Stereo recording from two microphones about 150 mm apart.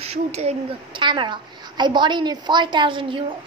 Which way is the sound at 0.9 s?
30° right (ahead or behind).